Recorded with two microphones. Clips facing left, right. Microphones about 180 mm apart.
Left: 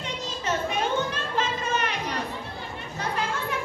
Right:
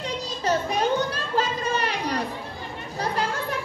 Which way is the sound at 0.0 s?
35° right (ahead or behind).